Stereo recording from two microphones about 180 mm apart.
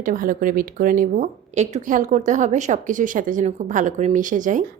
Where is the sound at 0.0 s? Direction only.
50° right (ahead or behind).